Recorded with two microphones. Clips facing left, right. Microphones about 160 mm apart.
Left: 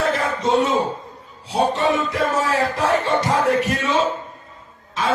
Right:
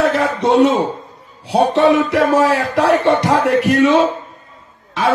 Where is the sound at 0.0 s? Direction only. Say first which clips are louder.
Right 5 dB; 70° right (ahead or behind).